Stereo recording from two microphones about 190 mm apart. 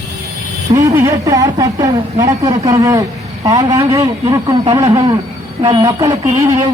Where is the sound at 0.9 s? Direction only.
15° right (ahead or behind).